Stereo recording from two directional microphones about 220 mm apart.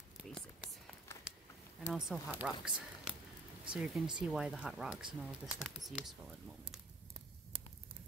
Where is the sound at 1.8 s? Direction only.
5° right (ahead or behind).